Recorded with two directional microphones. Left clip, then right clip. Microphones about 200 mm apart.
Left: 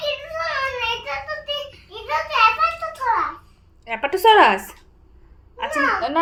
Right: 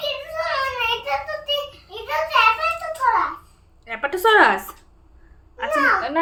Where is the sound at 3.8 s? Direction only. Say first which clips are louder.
Left 3 dB; 15° left (ahead or behind).